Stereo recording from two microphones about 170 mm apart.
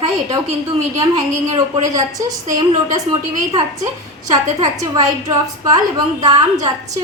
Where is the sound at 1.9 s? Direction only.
20° right (ahead or behind).